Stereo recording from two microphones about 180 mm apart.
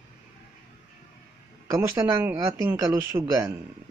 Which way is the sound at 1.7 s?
15° right (ahead or behind).